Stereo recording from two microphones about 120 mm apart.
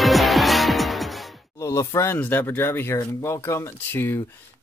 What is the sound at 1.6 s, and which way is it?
Speech, 25° left (ahead or behind).